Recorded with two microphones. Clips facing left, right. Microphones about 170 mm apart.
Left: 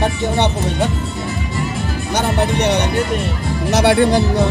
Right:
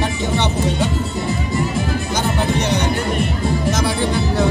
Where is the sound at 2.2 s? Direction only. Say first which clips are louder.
Left 4 dB; 65° left (ahead or behind).